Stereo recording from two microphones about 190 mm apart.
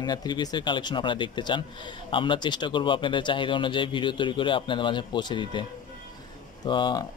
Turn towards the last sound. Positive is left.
turn(degrees=25)  # may be behind; listen again after turning